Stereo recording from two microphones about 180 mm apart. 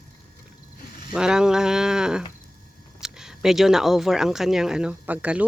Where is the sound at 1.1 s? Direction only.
5° right (ahead or behind).